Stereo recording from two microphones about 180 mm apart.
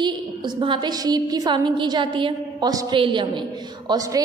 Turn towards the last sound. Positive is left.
turn(degrees=-20)  # may be behind; listen again after turning